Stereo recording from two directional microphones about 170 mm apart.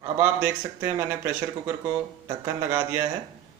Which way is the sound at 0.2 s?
15° right (ahead or behind).